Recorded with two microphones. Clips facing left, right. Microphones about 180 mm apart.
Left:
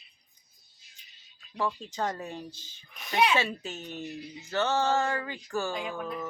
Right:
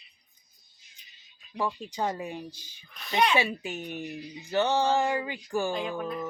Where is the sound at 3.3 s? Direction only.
15° right (ahead or behind).